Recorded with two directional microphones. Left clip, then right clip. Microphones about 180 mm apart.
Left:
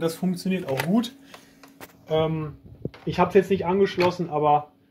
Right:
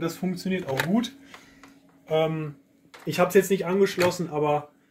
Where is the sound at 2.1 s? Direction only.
25° left (ahead or behind).